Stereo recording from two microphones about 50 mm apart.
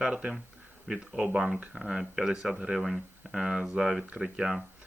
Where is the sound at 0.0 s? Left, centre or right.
Centre.